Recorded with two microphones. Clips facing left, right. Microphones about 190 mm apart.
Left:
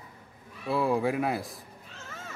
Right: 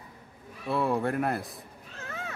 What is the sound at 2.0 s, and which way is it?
Cat, 65° right (ahead or behind).